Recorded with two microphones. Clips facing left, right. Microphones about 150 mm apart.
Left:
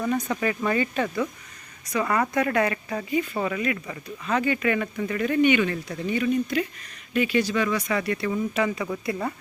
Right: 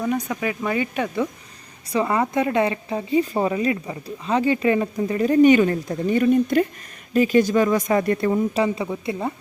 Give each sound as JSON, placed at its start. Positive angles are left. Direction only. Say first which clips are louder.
{"t": 0.0, "sound": "speech", "louder": "right 1 dB", "side_deg": -10}
{"t": 1.9, "sound": "speech", "louder": "right 3 dB", "side_deg": -25}
{"t": 8.5, "sound": "a woman's voice", "louder": "right 3 dB", "side_deg": -30}